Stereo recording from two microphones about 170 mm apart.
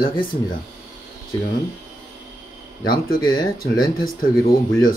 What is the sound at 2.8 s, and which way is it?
Speech, 60° left (ahead or behind).